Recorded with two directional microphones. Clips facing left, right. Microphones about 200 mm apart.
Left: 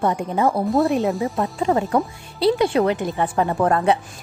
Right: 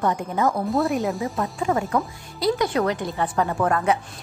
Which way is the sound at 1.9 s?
30° left (ahead or behind).